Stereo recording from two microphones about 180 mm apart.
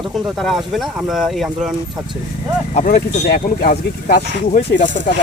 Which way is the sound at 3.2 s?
55° left (ahead or behind).